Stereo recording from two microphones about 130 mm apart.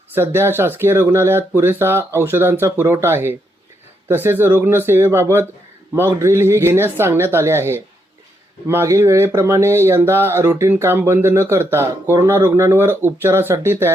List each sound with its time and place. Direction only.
0.1 s speech: 20° right (ahead or behind)